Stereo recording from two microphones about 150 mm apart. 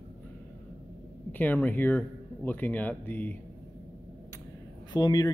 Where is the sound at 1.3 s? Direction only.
10° left (ahead or behind).